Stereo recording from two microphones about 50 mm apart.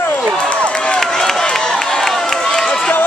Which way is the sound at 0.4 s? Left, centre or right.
Centre.